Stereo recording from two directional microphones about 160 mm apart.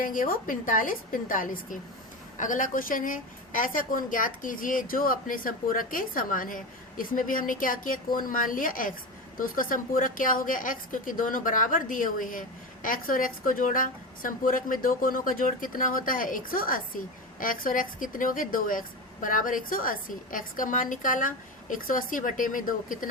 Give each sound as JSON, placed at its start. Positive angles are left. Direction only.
{"t": 0.0, "sound": "a woman's voice", "side_deg": 60}